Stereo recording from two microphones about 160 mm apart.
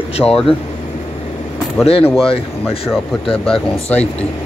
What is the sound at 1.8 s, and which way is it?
Speech, 35° left (ahead or behind).